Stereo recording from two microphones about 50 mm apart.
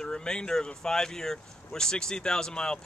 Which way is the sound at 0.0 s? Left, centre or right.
Centre.